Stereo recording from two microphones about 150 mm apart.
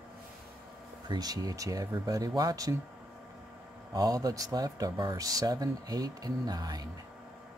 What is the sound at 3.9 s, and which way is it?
Speech, 25° right (ahead or behind).